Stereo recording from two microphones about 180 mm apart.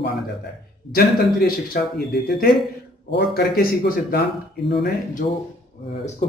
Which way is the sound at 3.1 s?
55° left (ahead or behind).